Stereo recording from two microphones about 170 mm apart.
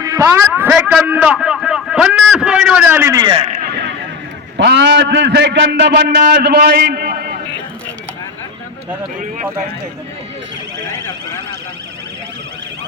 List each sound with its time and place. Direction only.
0.0 s a man's voice: 20° right (ahead or behind)
0.7 s a man's voice: 5° right (ahead or behind); by 3.3 s 20° right (ahead or behind)
3.5 s a sound: 70° right (ahead or behind)
4.5 s a man's voice: 90° right
5.9 s a man's voice: 55° right (ahead or behind)